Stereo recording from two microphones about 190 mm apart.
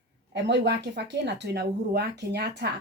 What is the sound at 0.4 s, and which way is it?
A woman's voice, 65° right (ahead or behind).